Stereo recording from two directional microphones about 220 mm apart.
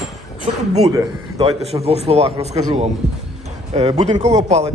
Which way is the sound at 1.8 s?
30° right (ahead or behind).